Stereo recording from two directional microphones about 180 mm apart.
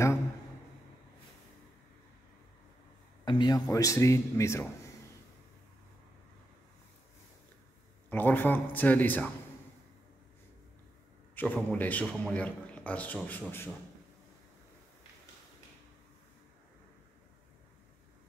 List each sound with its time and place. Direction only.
3.3 s a man's voice: 25° left (ahead or behind)
8.1 s a man's voice: 10° left (ahead or behind)
11.3 s a man's voice: 10° left (ahead or behind)